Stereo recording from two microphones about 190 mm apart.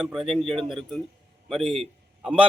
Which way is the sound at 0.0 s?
Centre (ahead or behind).